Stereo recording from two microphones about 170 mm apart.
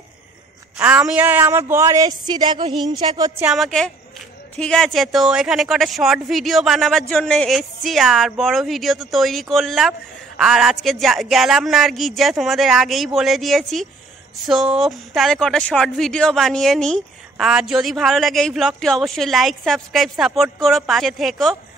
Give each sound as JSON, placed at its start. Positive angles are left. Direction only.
{"t": 0.7, "sound": "speech", "side_deg": -10}
{"t": 3.4, "sound": "a woman's voice", "side_deg": 0}